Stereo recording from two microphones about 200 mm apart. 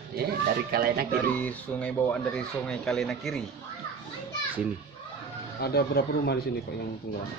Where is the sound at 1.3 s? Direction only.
5° left (ahead or behind).